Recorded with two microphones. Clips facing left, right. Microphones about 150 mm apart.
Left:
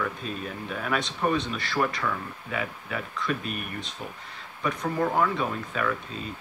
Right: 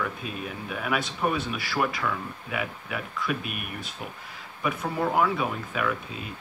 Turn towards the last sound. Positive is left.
turn(degrees=-10)  # may be behind; listen again after turning